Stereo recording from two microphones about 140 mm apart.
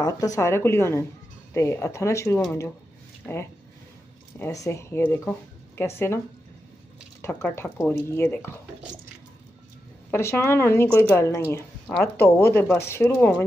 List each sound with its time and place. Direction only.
0.0 s a woman's voice: 25° left (ahead or behind)
4.4 s a woman's voice: 20° left (ahead or behind)
10.1 s a woman's voice: 15° left (ahead or behind)